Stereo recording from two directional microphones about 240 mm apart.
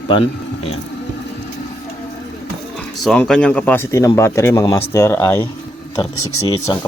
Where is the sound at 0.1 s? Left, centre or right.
Left.